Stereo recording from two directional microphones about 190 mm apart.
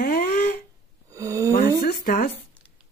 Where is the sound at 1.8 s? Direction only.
50° left (ahead or behind).